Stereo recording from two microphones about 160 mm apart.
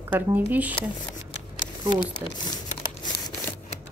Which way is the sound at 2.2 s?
20° right (ahead or behind).